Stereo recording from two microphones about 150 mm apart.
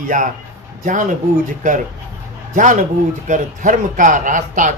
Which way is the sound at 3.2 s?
60° right (ahead or behind).